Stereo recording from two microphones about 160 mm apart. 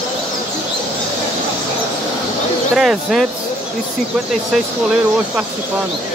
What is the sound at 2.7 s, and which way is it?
Speech, 5° right (ahead or behind).